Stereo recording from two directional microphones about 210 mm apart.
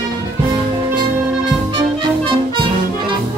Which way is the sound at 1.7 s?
25° right (ahead or behind).